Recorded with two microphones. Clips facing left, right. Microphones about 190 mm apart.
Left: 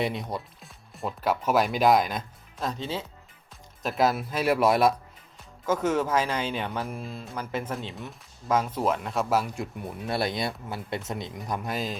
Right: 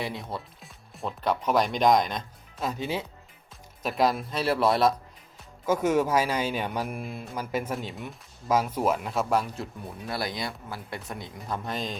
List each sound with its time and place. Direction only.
0.0 s speech: 20° left (ahead or behind)
0.3 s speech: centre (ahead or behind)
3.8 s speech: centre (ahead or behind)
5.6 s speech: 10° right (ahead or behind); by 9.6 s 5° left (ahead or behind)
9.8 s speech: 25° left (ahead or behind); by 11.9 s 5° left (ahead or behind)